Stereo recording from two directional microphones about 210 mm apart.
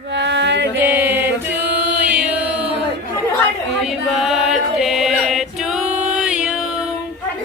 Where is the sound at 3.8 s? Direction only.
Centre (ahead or behind).